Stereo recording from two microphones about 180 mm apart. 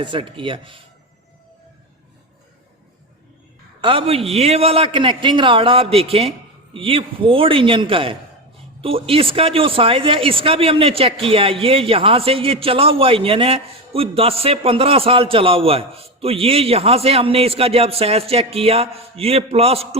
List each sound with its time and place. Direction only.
0.0 s a man's voice: 25° right (ahead or behind)
3.8 s a man's voice: 30° right (ahead or behind)